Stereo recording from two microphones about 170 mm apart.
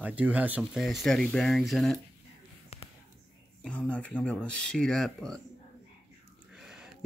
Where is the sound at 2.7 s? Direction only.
35° left (ahead or behind).